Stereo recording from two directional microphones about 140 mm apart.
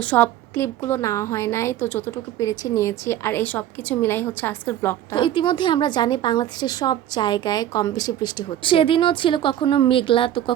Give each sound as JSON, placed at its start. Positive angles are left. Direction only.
{"t": 0.0, "sound": "a woman's voice", "side_deg": 10}
{"t": 5.1, "sound": "a woman's voice", "side_deg": 35}